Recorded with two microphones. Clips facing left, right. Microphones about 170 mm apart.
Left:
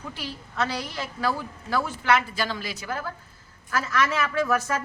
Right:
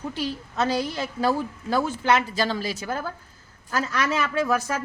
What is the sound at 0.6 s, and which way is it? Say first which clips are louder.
A woman's voice: right 4 dB; 25° right (ahead or behind).